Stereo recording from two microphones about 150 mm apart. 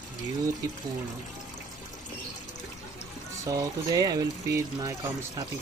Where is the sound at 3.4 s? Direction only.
25° right (ahead or behind).